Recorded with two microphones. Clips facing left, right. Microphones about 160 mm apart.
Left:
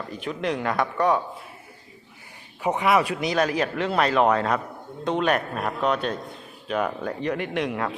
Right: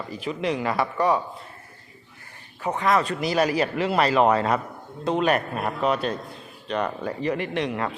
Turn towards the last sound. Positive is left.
turn(degrees=0)  # may be behind; listen again after turning